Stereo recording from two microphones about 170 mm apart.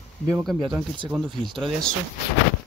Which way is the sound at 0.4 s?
Centre (ahead or behind).